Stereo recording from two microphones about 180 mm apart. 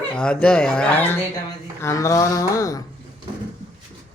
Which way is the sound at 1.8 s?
15° left (ahead or behind).